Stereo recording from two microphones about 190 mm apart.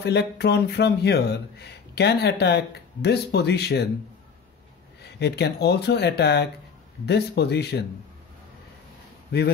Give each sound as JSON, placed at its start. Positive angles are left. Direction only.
{"t": 0.0, "sound": "speech", "side_deg": 60}
{"t": 5.0, "sound": "speech", "side_deg": 60}